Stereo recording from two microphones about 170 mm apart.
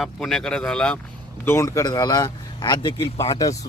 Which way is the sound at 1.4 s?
15° left (ahead or behind).